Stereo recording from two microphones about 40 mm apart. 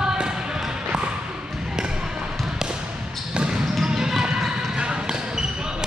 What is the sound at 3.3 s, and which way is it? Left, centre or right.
Basketball bounce, centre.